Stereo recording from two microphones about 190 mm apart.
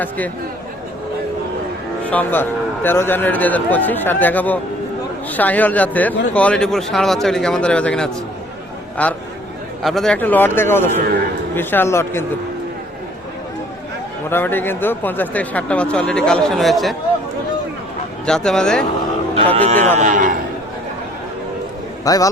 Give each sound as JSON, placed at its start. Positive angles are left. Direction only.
{"t": 2.0, "sound": "a man's voice", "side_deg": 10}
{"t": 14.3, "sound": "speech", "side_deg": 10}
{"t": 18.3, "sound": "a man's voice", "side_deg": 5}
{"t": 19.6, "sound": "speech", "side_deg": -35}
{"t": 22.0, "sound": "a man's voice", "side_deg": 20}